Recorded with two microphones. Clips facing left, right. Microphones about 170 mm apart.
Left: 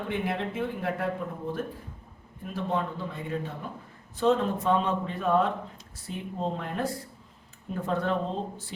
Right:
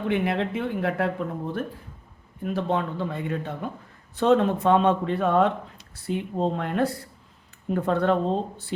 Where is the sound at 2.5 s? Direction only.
70° right (ahead or behind).